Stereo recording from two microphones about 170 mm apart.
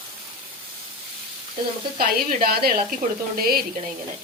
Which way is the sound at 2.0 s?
60° right (ahead or behind).